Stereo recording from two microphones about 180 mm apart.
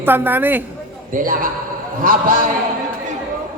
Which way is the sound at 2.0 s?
50° right (ahead or behind).